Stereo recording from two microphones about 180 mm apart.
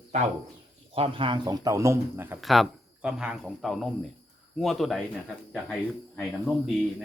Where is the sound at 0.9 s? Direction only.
30° right (ahead or behind); by 2.3 s 15° right (ahead or behind).